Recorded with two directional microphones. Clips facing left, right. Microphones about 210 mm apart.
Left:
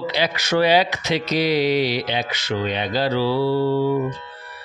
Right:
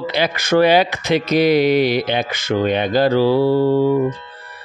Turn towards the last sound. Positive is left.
turn(degrees=-45)  # may be behind; listen again after turning